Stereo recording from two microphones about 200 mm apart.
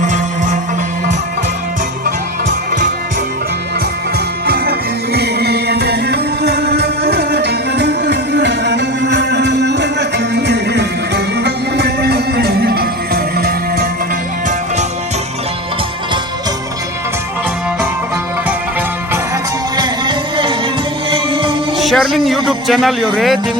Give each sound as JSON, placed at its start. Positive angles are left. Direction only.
{"t": 0.0, "sound": "music", "side_deg": -40}
{"t": 4.4, "sound": "music", "side_deg": -50}
{"t": 19.7, "sound": "music", "side_deg": -20}
{"t": 21.8, "sound": "music", "side_deg": 0}
{"t": 22.4, "sound": "a man's voice", "side_deg": 0}